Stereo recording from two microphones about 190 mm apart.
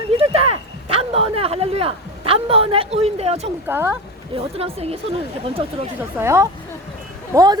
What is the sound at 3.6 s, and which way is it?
Speech, 10° right (ahead or behind).